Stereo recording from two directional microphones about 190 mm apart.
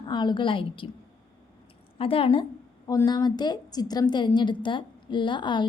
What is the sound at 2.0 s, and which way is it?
A woman's voice, 30° left (ahead or behind).